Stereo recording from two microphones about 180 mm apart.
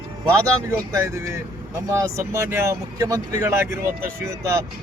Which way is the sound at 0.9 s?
15° right (ahead or behind).